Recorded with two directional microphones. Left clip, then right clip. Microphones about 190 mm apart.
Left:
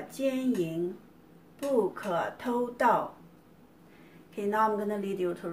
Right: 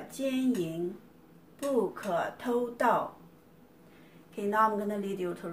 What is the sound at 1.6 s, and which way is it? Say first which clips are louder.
Speech: left 2 dB; centre (ahead or behind).